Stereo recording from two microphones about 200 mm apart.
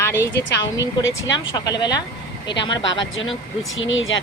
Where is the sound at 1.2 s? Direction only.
65° left (ahead or behind).